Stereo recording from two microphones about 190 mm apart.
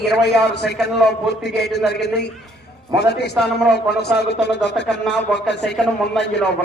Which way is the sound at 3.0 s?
60° left (ahead or behind).